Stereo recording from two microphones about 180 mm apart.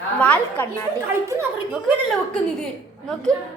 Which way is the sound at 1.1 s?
15° right (ahead or behind).